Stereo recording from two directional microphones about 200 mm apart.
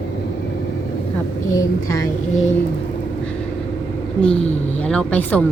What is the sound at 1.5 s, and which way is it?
Speech, 15° left (ahead or behind).